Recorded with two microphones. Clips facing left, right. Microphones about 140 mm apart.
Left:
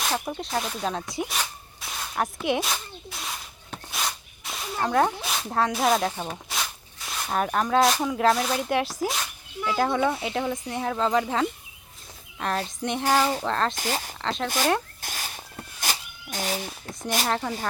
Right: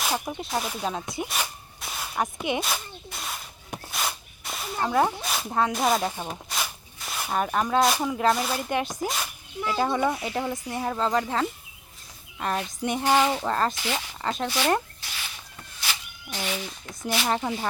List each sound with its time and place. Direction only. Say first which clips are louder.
0.0 s speech: even; 5° right (ahead or behind)
1.1 s a sound: left 1 dB; centre (ahead or behind)
3.9 s speech: even; centre (ahead or behind)
13.7 s speech: left 1 dB; 45° left (ahead or behind)
14.2 s speech: even; 5° right (ahead or behind)
15.0 s a sound: left 4 dB; 45° left (ahead or behind)
17.2 s speech: right 2 dB; 5° right (ahead or behind)